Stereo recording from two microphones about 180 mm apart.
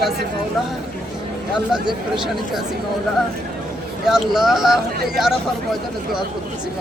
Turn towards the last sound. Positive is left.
turn(degrees=0)  # may be behind; listen again after turning